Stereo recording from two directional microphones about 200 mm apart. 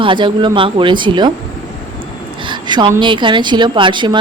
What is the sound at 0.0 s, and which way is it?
A woman's voice, 25° right (ahead or behind).